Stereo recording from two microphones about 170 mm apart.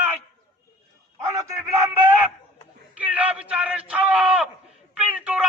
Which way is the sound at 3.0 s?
10° right (ahead or behind).